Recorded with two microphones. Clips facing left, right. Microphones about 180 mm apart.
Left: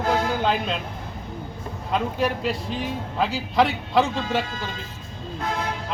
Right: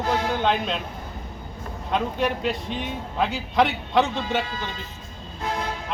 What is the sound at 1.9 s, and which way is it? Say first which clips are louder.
A man's voice: even; centre (ahead or behind).